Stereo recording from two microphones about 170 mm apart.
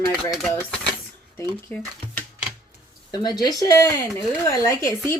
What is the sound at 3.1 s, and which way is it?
Speech, 25° left (ahead or behind).